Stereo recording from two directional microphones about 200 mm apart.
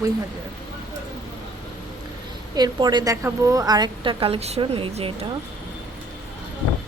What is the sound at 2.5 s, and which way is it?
A woman's voice, 20° right (ahead or behind).